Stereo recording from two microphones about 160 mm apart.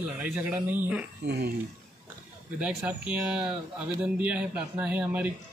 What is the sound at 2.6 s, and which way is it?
Speech, 10° right (ahead or behind).